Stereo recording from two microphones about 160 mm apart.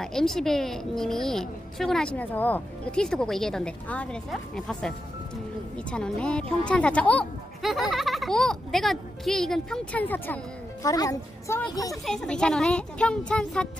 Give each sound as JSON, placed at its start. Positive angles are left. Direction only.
{"t": 0.0, "sound": "a woman's voice", "side_deg": 5}
{"t": 12.1, "sound": "speech", "side_deg": 5}